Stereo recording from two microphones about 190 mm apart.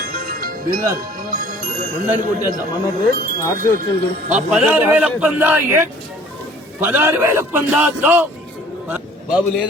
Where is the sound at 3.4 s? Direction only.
15° left (ahead or behind).